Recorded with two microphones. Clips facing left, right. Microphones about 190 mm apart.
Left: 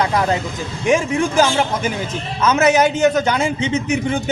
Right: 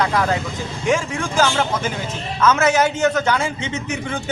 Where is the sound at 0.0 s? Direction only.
20° left (ahead or behind).